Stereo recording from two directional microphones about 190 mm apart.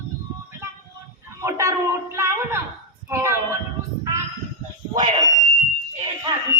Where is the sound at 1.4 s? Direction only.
15° right (ahead or behind).